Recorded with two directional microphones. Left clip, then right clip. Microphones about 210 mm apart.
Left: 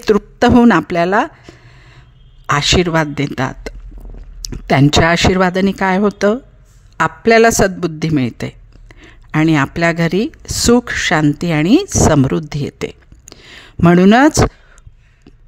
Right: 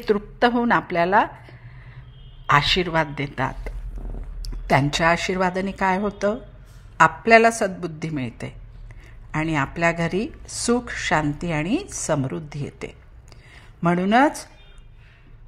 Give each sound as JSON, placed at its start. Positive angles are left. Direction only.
{"t": 0.0, "sound": "a man's voice", "side_deg": 45}